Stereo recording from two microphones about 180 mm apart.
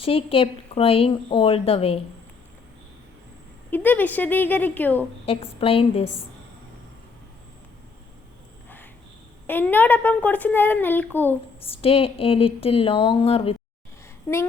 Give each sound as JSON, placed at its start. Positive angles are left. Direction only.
{"t": 0.0, "sound": "speech", "side_deg": 30}
{"t": 3.7, "sound": "speech", "side_deg": 10}
{"t": 5.2, "sound": "speech", "side_deg": 30}
{"t": 9.5, "sound": "speech", "side_deg": 10}
{"t": 11.6, "sound": "speech", "side_deg": 30}
{"t": 14.3, "sound": "speech", "side_deg": 10}